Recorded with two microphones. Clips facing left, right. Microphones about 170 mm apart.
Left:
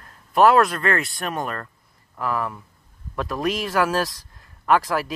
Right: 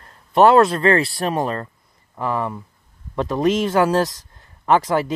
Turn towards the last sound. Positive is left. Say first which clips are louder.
# right 3 dB
turn(degrees=-20)  # may be behind; listen again after turning